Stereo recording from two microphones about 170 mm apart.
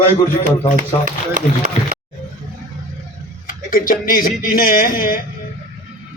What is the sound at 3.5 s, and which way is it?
A man's voice, 55° left (ahead or behind).